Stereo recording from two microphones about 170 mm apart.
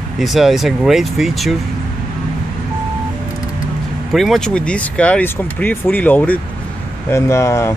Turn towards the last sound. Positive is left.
turn(degrees=15)  # may be behind; listen again after turning